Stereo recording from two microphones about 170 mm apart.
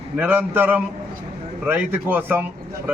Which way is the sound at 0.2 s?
10° right (ahead or behind).